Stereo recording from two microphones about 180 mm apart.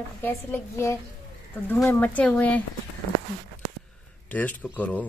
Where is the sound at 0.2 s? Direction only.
10° left (ahead or behind).